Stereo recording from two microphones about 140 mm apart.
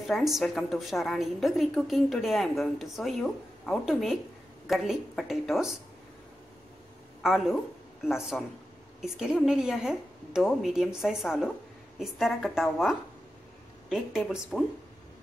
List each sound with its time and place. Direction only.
0.0 s a woman's voice: centre (ahead or behind)
7.2 s a woman's voice: 5° right (ahead or behind)